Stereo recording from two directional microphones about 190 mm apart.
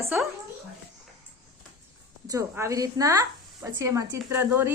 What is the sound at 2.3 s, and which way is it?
A woman's voice, 15° right (ahead or behind).